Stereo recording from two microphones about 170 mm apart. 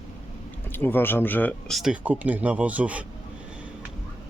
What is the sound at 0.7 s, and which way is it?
Speech, 10° left (ahead or behind).